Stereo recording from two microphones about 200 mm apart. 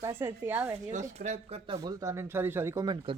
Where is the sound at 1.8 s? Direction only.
15° right (ahead or behind).